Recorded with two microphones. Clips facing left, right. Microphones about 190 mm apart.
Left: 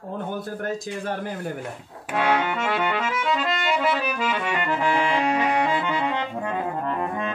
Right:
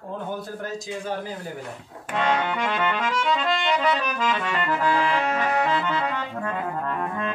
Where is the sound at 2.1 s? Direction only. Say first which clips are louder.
Left 1 dB; 10° left (ahead or behind).